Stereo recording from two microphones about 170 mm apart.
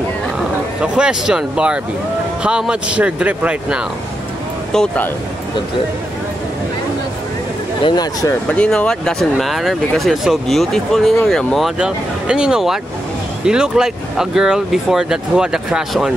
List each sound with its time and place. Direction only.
0.8 s speech: 5° right (ahead or behind)
7.8 s speech: 25° left (ahead or behind)
8.5 s speech: 5° left (ahead or behind)